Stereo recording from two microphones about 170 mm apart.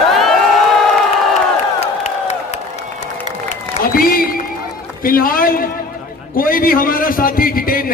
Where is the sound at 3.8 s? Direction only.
60° left (ahead or behind).